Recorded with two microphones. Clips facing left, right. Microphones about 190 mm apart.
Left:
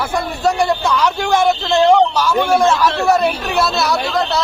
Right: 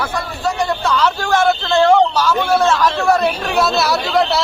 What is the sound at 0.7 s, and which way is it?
A man's voice, 10° left (ahead or behind).